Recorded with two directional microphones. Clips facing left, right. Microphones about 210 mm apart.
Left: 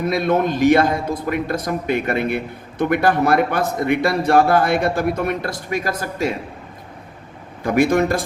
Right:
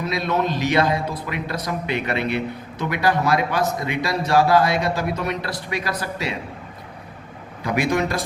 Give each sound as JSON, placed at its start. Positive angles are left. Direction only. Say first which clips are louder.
{"t": 0.0, "sound": "a man's voice", "louder": "left 5 dB", "side_deg": 50}
{"t": 7.6, "sound": "a man's voice", "louder": "left 5 dB", "side_deg": 50}